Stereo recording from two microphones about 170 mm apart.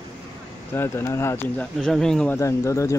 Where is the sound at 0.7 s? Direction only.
15° left (ahead or behind).